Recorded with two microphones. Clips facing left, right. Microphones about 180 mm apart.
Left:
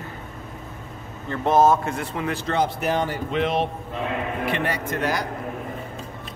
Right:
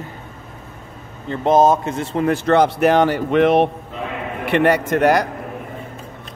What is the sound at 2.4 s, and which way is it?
Speech, 70° right (ahead or behind).